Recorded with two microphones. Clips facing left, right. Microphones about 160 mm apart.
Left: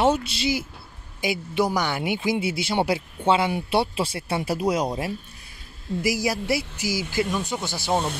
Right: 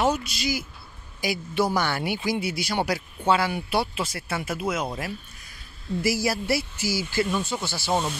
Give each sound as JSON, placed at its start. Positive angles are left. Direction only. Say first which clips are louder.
{"t": 0.0, "sound": "a man's voice", "louder": "left 3 dB", "side_deg": 30}
{"t": 6.0, "sound": "speech", "louder": "even", "side_deg": 15}